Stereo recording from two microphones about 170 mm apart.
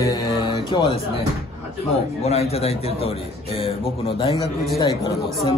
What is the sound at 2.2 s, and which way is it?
Speech, 35° left (ahead or behind).